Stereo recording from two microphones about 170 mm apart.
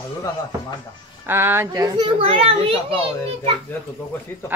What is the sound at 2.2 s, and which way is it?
Speech, 35° right (ahead or behind).